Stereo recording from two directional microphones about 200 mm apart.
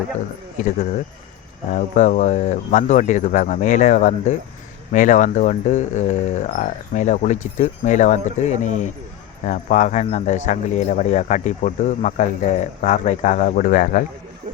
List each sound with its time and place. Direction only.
0.5 s speech: 40° left (ahead or behind)